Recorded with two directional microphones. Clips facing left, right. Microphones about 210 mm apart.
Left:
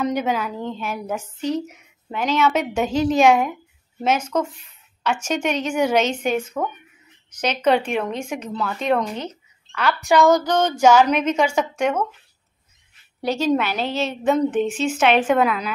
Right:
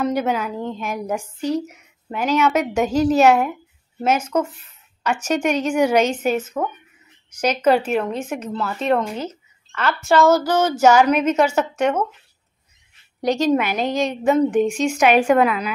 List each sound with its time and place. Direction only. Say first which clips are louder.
0.0 s a woman's voice: right 1 dB; 5° right (ahead or behind)
9.9 s speech: right 1 dB; 15° left (ahead or behind)
10.2 s a woman's voice: right 1 dB; 5° right (ahead or behind)
13.5 s a woman's voice: right 2 dB; 10° right (ahead or behind)